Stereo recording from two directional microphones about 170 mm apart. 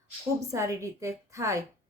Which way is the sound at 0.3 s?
20° right (ahead or behind).